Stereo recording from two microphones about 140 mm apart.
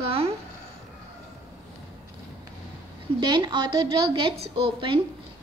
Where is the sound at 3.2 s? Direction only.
30° right (ahead or behind).